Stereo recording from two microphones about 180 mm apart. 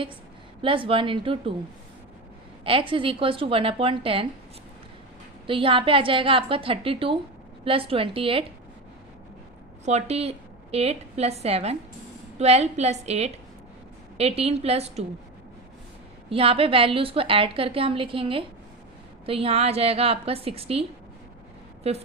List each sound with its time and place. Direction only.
0.6 s a woman's voice: 30° right (ahead or behind)
2.6 s a woman's voice: 30° right (ahead or behind)
5.5 s a woman's voice: 30° right (ahead or behind)
9.8 s a woman's voice: 35° right (ahead or behind)
16.3 s a woman's voice: 30° right (ahead or behind)
21.8 s a woman's voice: 35° right (ahead or behind)